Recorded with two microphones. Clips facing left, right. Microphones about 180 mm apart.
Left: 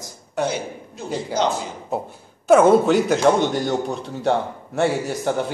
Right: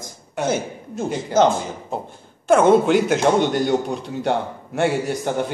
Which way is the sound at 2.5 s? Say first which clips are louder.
Left 1 dB; 5° left (ahead or behind).